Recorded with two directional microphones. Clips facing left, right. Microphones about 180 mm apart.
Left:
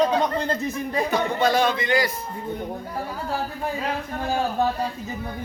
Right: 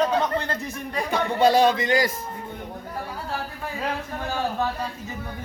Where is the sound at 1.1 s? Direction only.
35° right (ahead or behind).